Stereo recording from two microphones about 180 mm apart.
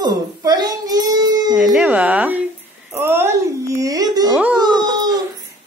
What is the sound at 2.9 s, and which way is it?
Whimper, 15° right (ahead or behind).